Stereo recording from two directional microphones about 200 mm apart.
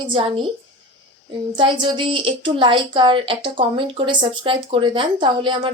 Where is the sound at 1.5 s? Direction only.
25° right (ahead or behind).